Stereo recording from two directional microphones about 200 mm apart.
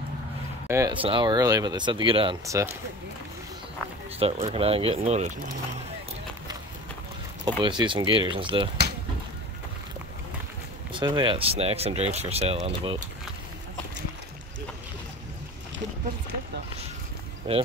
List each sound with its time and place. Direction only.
0.7 s speech: 15° right (ahead or behind)
1.0 s speech: 25° right (ahead or behind)
2.4 s speech: 15° right (ahead or behind)
4.2 s speech: 30° right (ahead or behind)
7.4 s speech: 25° right (ahead or behind)
10.9 s speech: 25° right (ahead or behind)